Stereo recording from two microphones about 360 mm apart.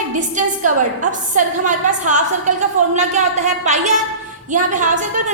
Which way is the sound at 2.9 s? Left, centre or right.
Centre.